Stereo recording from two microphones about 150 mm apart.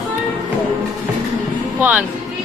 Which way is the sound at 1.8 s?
10° right (ahead or behind).